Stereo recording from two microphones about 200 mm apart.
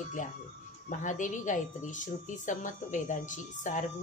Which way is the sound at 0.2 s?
40° left (ahead or behind).